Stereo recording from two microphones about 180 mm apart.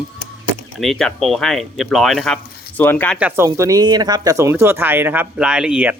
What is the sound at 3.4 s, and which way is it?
Speech, 20° right (ahead or behind).